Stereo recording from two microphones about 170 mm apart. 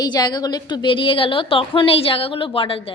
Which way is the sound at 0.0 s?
25° left (ahead or behind).